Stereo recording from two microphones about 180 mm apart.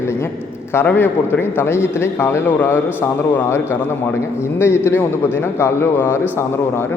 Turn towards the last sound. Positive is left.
turn(degrees=15)  # may be behind; listen again after turning